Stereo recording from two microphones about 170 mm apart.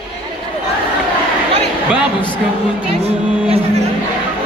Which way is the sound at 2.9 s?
35° right (ahead or behind).